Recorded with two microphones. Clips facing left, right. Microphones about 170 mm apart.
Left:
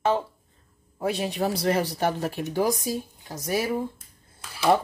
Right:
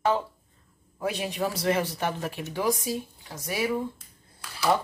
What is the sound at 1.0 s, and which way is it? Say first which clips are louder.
A man's voice: left 3 dB; 35° left (ahead or behind).